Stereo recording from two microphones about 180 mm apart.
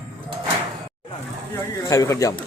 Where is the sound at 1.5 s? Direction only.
15° left (ahead or behind).